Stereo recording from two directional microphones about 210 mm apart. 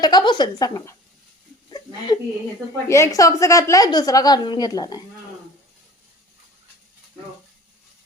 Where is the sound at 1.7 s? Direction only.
20° left (ahead or behind).